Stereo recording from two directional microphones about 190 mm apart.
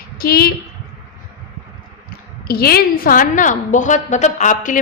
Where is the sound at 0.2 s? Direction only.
50° left (ahead or behind).